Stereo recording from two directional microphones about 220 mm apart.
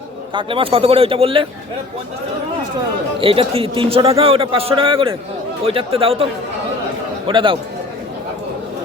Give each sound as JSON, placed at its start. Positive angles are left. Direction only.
{"t": 0.3, "sound": "a man's voice", "side_deg": -25}
{"t": 3.2, "sound": "a man's voice", "side_deg": -25}
{"t": 7.3, "sound": "a man's voice", "side_deg": -20}